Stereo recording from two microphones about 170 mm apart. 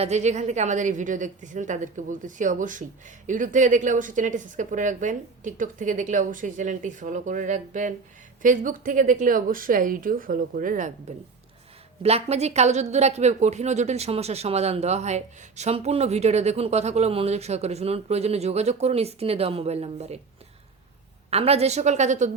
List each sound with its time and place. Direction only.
0.0 s a woman's voice: 40° right (ahead or behind)
12.0 s speech: 40° right (ahead or behind)
21.2 s speech: 35° right (ahead or behind)